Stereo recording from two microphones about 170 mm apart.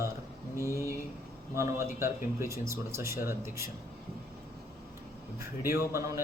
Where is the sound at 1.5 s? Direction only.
15° right (ahead or behind).